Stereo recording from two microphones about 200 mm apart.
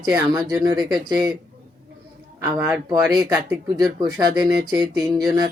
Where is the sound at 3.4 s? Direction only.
10° right (ahead or behind).